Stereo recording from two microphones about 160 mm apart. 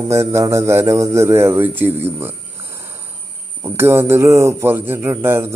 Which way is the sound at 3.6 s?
15° right (ahead or behind).